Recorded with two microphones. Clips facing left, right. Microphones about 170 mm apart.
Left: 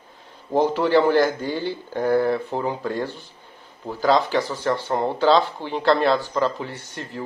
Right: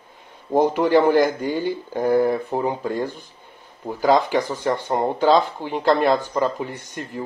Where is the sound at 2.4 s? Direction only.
5° right (ahead or behind).